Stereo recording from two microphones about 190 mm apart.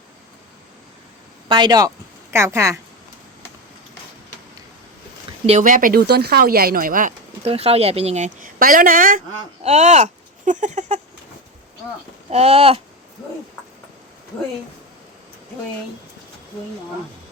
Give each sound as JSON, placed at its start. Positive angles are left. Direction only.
{"t": 1.5, "sound": "speech", "side_deg": -25}
{"t": 5.5, "sound": "speech", "side_deg": -40}
{"t": 12.3, "sound": "a sound", "side_deg": -35}